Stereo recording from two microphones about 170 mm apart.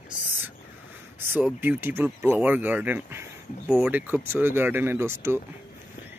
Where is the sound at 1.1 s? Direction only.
10° right (ahead or behind).